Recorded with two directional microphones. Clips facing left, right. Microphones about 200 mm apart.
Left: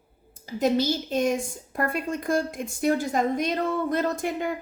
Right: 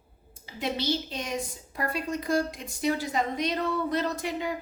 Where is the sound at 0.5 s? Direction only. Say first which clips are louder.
Left 6 dB; 45° left (ahead or behind).